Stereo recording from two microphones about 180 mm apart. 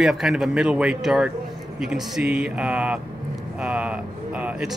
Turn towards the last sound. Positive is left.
turn(degrees=-5)  # may be behind; listen again after turning